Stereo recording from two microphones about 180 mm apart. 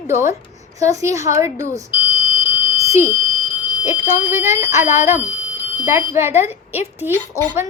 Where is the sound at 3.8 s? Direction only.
10° right (ahead or behind).